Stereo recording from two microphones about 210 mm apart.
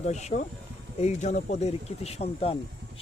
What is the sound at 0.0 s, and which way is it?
Speech, 35° left (ahead or behind).